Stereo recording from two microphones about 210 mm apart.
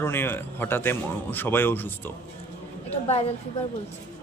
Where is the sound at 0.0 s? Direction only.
10° left (ahead or behind).